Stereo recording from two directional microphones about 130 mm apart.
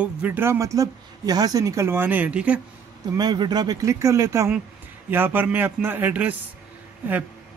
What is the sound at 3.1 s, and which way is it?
A man's voice, 30° right (ahead or behind).